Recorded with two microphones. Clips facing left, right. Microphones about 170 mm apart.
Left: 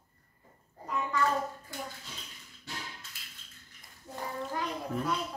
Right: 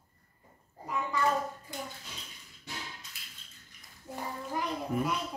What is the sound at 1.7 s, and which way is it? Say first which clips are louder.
Dishes: right 1 dB; 20° right (ahead or behind).